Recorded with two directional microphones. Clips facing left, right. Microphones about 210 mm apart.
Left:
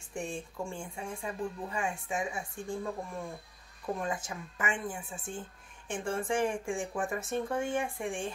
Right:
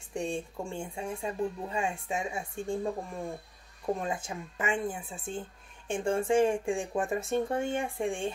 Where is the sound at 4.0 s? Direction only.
25° right (ahead or behind).